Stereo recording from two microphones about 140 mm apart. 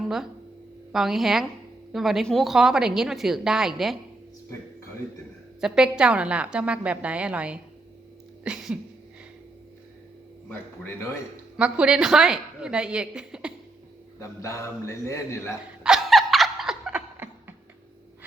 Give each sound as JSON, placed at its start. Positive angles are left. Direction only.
{"t": 0.9, "sound": "a woman's voice", "side_deg": 0}
{"t": 5.5, "sound": "a woman's voice", "side_deg": -5}
{"t": 11.5, "sound": "a woman's voice", "side_deg": -5}
{"t": 14.2, "sound": "a man's voice", "side_deg": 20}
{"t": 15.8, "sound": "snicker", "side_deg": -5}